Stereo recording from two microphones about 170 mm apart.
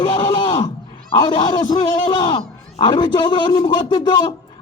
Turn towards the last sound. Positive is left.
turn(degrees=25)  # may be behind; listen again after turning